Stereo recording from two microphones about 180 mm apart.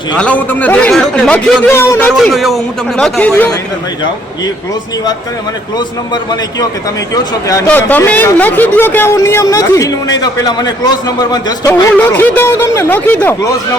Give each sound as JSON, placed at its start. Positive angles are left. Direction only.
{"t": 0.2, "sound": "speech", "side_deg": 10}
{"t": 7.4, "sound": "speech", "side_deg": 15}
{"t": 11.7, "sound": "speech", "side_deg": 10}